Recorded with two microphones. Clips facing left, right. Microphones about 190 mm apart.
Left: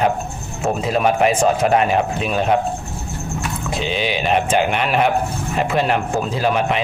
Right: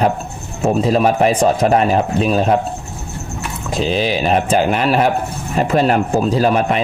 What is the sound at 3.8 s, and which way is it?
Speech, 35° right (ahead or behind).